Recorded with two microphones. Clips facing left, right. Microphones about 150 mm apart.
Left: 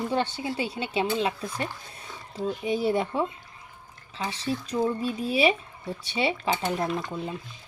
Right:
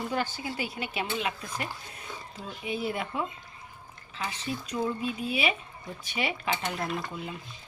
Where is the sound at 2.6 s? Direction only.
35° left (ahead or behind).